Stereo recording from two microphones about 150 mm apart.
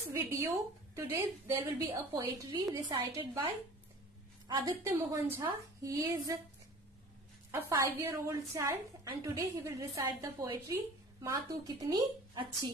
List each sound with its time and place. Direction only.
0.1 s a woman's voice: 20° right (ahead or behind)
3.1 s a woman's voice: 40° right (ahead or behind)
4.5 s a woman's voice: 30° right (ahead or behind)
7.8 s a woman's voice: 15° right (ahead or behind)